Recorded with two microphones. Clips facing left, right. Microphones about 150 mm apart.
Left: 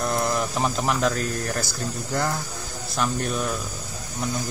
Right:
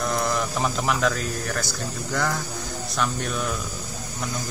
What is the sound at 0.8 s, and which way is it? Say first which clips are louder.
Speech: left 1 dB; 40° left (ahead or behind).